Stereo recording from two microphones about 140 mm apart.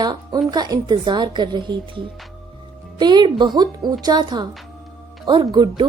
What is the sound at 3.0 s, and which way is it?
Speech, 30° right (ahead or behind).